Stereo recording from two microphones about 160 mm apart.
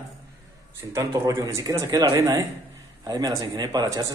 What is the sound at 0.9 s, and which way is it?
Speech, 20° right (ahead or behind).